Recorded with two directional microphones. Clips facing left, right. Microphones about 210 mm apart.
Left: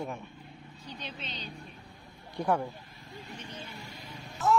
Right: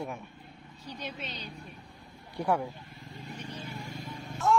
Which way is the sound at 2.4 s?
Centre (ahead or behind).